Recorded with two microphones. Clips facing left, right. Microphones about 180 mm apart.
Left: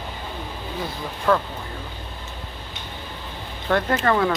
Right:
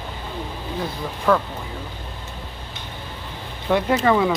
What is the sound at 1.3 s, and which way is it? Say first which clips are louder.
Speech: right 1 dB; 5° right (ahead or behind).